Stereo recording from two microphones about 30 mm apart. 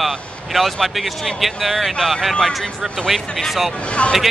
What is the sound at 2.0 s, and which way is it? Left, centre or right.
Speech, centre.